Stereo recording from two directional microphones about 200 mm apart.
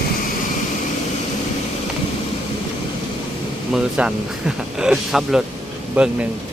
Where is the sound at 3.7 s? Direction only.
5° right (ahead or behind).